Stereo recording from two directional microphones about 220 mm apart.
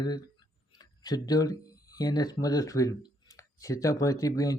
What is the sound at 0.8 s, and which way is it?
Speech, 15° left (ahead or behind).